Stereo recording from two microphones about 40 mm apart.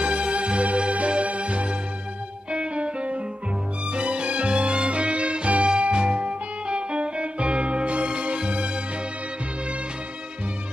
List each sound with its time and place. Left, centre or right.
0.0 s music: right